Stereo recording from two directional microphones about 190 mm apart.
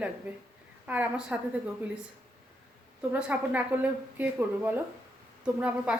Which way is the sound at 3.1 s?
5° right (ahead or behind).